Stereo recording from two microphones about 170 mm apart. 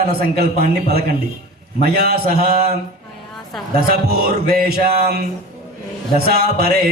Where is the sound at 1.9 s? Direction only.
65° right (ahead or behind).